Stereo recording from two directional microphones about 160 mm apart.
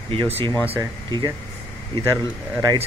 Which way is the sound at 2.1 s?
25° right (ahead or behind).